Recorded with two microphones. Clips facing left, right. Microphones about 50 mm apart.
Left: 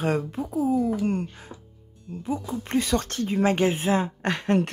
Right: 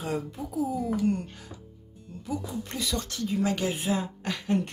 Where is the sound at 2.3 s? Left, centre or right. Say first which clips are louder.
Left 6 dB; left.